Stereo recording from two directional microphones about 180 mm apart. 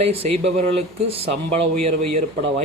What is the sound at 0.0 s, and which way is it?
Speech, 35° right (ahead or behind).